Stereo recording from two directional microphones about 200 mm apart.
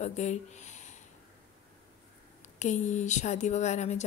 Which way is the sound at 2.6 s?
35° left (ahead or behind).